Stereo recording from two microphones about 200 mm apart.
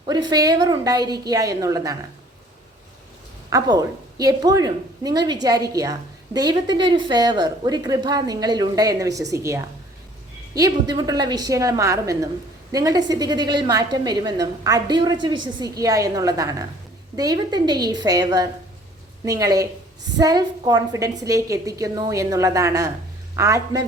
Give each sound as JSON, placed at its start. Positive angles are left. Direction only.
{"t": 0.0, "sound": "a woman's voice", "side_deg": -20}
{"t": 3.5, "sound": "a woman's voice", "side_deg": -20}